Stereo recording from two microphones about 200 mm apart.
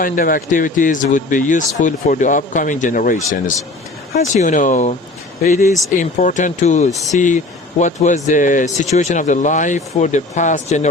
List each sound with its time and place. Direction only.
0.0 s speech: 45° left (ahead or behind)
4.4 s speech: 40° left (ahead or behind)